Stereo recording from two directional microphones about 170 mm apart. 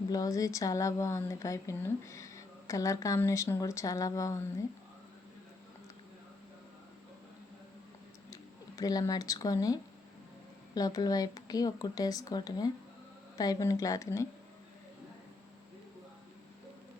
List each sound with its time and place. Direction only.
0.1 s speech: 20° left (ahead or behind)
8.3 s speech: 20° left (ahead or behind)
10.8 s speech: 20° left (ahead or behind)